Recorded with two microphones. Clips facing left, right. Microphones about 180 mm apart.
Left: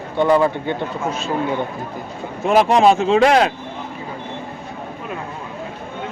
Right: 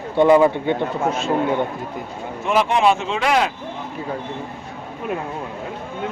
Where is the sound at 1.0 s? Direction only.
60° right (ahead or behind).